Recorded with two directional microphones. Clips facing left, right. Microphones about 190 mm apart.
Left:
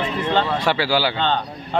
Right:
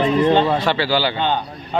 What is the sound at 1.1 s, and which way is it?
Speech, 10° right (ahead or behind).